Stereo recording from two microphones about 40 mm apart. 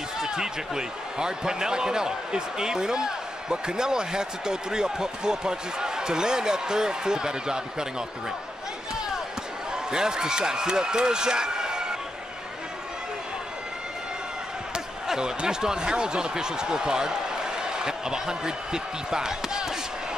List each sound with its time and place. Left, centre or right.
0.2 s speech: centre
9.8 s speech: centre
15.0 s speech: centre